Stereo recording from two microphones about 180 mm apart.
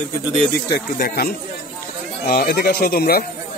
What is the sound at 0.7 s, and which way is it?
Speech, 55° left (ahead or behind).